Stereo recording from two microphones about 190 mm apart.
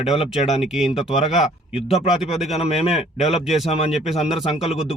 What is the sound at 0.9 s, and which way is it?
Speech, 30° left (ahead or behind).